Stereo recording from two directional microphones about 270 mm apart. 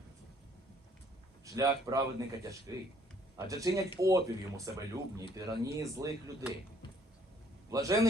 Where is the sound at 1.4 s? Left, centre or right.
Centre.